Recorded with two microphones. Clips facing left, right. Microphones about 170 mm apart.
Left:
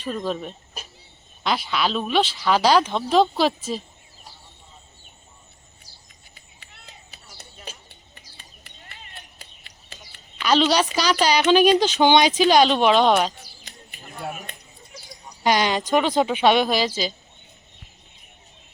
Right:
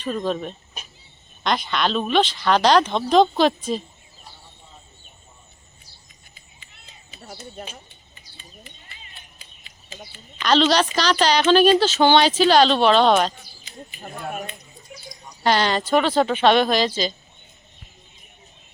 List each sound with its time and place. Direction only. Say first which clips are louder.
0.3 s speech: right 2 dB; 5° left (ahead or behind)
6.3 s a sound: left 3 dB; 65° left (ahead or behind)
10.4 s a woman's voice: right 1 dB; 10° left (ahead or behind)
15.4 s a woman's voice: right 1 dB; 10° left (ahead or behind)